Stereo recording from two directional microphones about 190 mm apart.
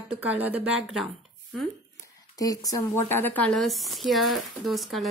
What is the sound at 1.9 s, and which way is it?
Speech, 20° left (ahead or behind).